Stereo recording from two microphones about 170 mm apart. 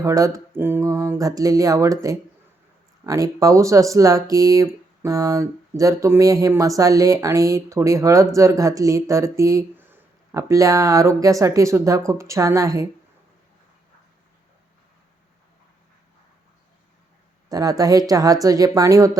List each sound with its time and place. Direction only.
0.0 s speech: 20° right (ahead or behind)
17.5 s speech: 20° right (ahead or behind)